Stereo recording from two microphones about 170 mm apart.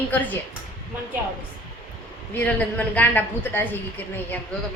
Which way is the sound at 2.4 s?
10° left (ahead or behind).